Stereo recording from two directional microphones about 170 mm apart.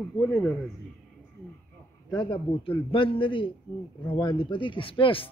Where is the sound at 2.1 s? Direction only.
30° left (ahead or behind).